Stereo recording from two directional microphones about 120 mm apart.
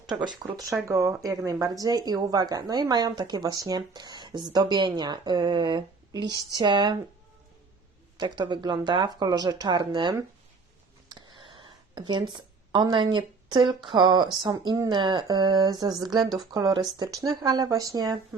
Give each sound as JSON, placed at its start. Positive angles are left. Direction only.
{"t": 0.1, "sound": "a woman's voice", "side_deg": -40}
{"t": 0.9, "sound": "a woman's voice", "side_deg": -25}
{"t": 8.2, "sound": "a woman's voice", "side_deg": -40}